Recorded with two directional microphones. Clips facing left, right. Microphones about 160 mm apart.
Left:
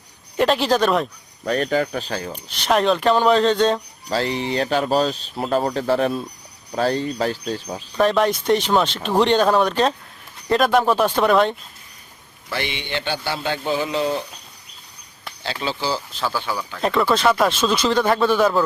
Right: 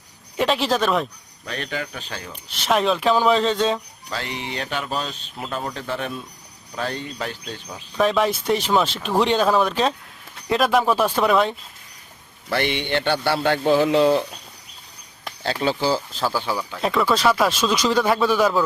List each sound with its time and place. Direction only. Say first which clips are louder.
0.3 s speech: left 3 dB; centre (ahead or behind)
1.5 s speech: left 9 dB; 40° left (ahead or behind)
2.5 s speech: left 2 dB; centre (ahead or behind)
4.1 s speech: left 8 dB; 35° left (ahead or behind)
7.9 s speech: left 2 dB; centre (ahead or behind)
12.5 s a man's voice: right 4 dB; 55° right (ahead or behind)
15.4 s speech: right 4 dB; 50° right (ahead or behind)
16.3 s speech: right 1 dB; 5° right (ahead or behind)